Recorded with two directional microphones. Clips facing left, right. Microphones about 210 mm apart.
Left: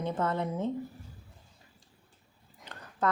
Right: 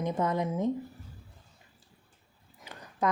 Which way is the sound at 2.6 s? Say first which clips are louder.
Right 1 dB; 10° right (ahead or behind).